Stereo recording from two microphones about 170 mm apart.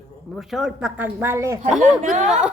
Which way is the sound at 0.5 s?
5° right (ahead or behind).